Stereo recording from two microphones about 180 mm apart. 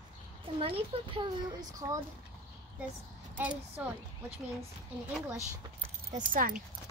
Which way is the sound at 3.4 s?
10° right (ahead or behind).